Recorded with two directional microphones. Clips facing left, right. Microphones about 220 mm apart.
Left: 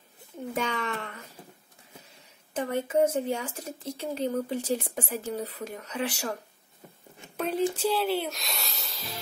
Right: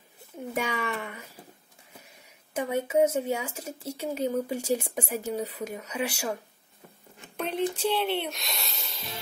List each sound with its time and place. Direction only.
0.6 s speech: 10° right (ahead or behind)
7.3 s a sound: 5° left (ahead or behind)
7.7 s speech: centre (ahead or behind)